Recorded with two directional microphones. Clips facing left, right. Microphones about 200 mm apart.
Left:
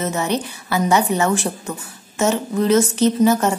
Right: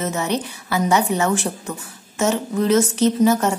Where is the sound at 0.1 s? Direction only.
30° left (ahead or behind).